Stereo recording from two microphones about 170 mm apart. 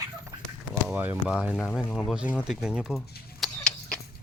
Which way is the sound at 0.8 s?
10° right (ahead or behind).